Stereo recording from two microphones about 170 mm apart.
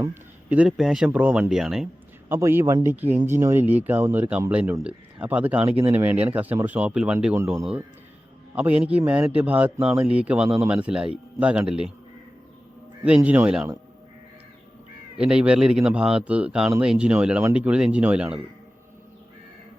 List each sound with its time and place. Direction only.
0.0 s speech: 10° right (ahead or behind)
2.3 s speech: 15° right (ahead or behind)
13.2 s speech: 10° right (ahead or behind)
15.2 s speech: 5° right (ahead or behind)